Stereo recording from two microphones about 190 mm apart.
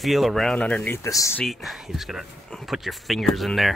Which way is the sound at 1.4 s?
Centre (ahead or behind).